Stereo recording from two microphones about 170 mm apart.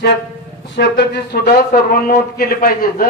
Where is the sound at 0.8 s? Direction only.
75° left (ahead or behind).